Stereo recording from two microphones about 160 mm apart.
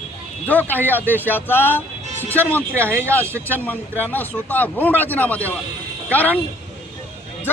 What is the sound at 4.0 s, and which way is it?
Speech, 10° left (ahead or behind).